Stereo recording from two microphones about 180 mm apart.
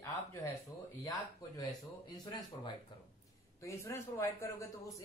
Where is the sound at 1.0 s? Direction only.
20° left (ahead or behind).